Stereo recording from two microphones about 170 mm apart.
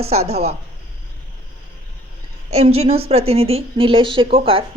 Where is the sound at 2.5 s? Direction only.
35° right (ahead or behind).